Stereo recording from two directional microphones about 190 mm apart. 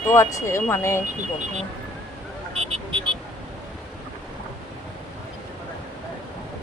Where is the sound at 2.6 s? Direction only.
35° right (ahead or behind).